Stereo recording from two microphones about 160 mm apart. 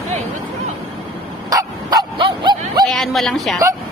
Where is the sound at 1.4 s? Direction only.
25° right (ahead or behind).